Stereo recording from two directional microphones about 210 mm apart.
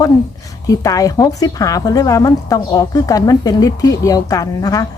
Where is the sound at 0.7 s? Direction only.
15° left (ahead or behind).